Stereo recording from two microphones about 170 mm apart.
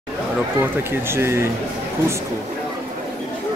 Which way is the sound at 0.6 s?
15° right (ahead or behind).